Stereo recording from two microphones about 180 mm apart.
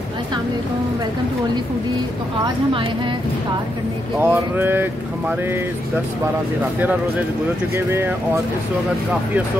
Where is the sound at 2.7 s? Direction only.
30° right (ahead or behind).